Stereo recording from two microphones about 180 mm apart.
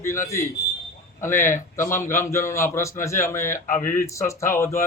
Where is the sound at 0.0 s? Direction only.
15° left (ahead or behind).